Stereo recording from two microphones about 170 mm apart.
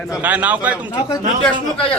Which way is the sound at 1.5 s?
30° left (ahead or behind).